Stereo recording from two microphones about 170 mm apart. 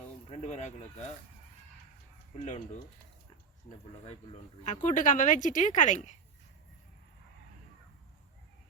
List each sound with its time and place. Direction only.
0.3 s speech: 40° left (ahead or behind)
4.6 s speech: 45° left (ahead or behind)